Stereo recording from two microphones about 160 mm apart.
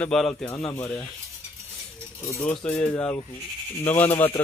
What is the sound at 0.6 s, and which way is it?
Speech, 20° left (ahead or behind).